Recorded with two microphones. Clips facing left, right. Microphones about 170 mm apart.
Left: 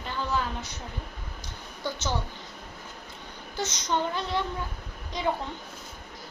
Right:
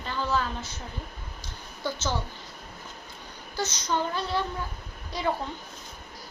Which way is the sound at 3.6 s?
20° left (ahead or behind).